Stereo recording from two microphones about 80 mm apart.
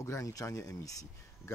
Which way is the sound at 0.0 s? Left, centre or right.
Left.